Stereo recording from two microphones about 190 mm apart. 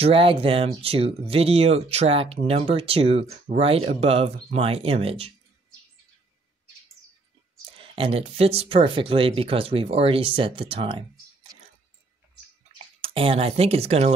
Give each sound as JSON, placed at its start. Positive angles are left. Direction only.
{"t": 0.0, "sound": "speech", "side_deg": -30}
{"t": 7.7, "sound": "speech", "side_deg": -30}
{"t": 13.0, "sound": "speech", "side_deg": -30}